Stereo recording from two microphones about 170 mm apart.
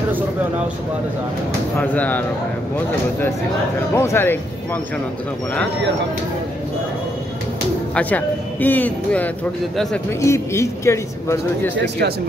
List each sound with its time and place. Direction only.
1.8 s speech: 10° left (ahead or behind)
3.9 s speech: 15° left (ahead or behind)
7.9 s speech: 10° left (ahead or behind)
11.7 s speech: 80° right